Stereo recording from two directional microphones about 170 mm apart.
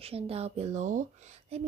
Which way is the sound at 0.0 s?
35° right (ahead or behind).